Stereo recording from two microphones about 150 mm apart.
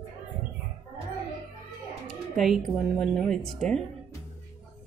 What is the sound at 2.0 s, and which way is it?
Speech, centre (ahead or behind).